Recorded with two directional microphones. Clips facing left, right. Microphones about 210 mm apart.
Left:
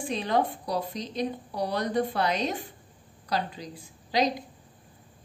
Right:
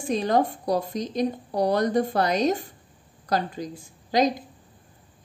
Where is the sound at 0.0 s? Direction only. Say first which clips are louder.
Right 4 dB; 45° right (ahead or behind).